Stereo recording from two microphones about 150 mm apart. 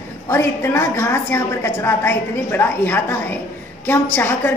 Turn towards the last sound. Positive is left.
turn(degrees=15)  # may be behind; listen again after turning